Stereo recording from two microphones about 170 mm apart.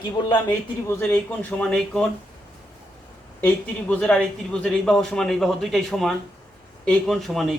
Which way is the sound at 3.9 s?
5° left (ahead or behind).